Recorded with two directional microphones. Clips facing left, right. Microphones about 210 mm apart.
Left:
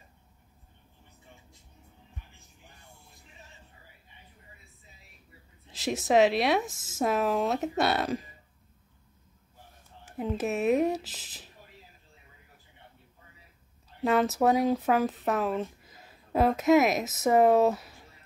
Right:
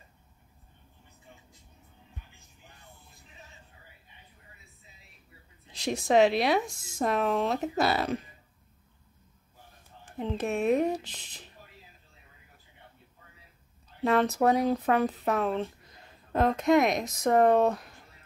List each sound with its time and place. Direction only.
5.7 s speech: centre (ahead or behind)
10.0 s speech: 5° left (ahead or behind)
14.0 s speech: centre (ahead or behind)